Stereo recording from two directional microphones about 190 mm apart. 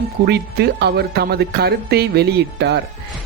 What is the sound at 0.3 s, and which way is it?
A woman's voice, 60° right (ahead or behind).